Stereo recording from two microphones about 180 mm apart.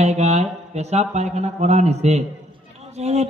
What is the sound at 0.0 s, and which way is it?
A man's voice, 35° right (ahead or behind).